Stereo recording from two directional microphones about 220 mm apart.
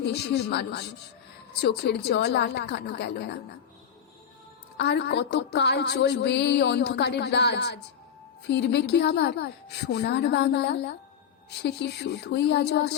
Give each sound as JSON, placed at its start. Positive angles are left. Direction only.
{"t": 0.0, "sound": "speech", "side_deg": 50}
{"t": 4.8, "sound": "speech", "side_deg": 50}